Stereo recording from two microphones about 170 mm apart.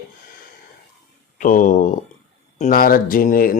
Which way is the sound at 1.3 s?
50° left (ahead or behind).